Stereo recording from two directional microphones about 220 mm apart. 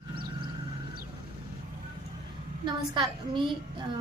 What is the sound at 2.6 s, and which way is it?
Speech, 20° right (ahead or behind).